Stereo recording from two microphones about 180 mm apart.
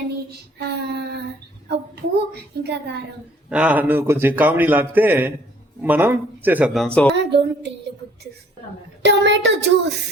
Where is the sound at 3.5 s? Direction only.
5° right (ahead or behind).